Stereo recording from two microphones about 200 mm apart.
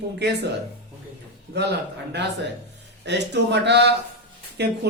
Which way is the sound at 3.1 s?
60° right (ahead or behind).